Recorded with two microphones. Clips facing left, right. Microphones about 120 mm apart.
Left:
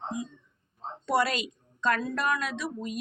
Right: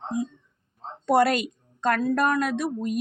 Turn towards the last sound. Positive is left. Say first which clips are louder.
# right 7 dB
turn(degrees=-50)  # may be behind; listen again after turning